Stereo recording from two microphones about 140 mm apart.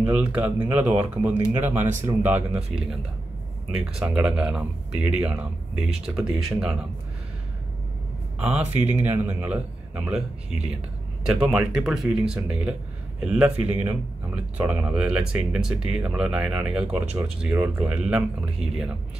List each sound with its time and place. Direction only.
0.0 s speech: 10° right (ahead or behind)
8.4 s speech: 10° right (ahead or behind)